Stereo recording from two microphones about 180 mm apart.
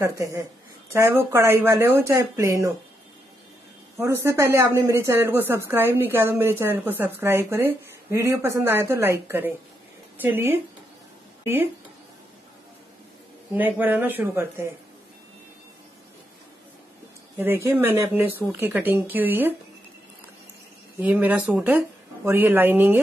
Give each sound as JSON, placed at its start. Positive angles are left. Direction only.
{"t": 0.0, "sound": "speech", "side_deg": -20}
{"t": 4.0, "sound": "speech", "side_deg": -15}
{"t": 13.5, "sound": "speech", "side_deg": -10}
{"t": 17.4, "sound": "speech", "side_deg": -10}
{"t": 21.0, "sound": "speech", "side_deg": -10}